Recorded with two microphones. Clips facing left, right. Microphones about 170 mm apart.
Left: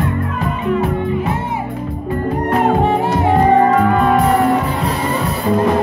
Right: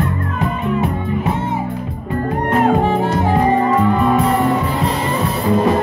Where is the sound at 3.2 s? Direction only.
65° left (ahead or behind).